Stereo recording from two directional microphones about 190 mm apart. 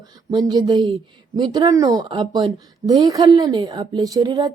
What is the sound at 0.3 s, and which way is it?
Speech, 20° right (ahead or behind).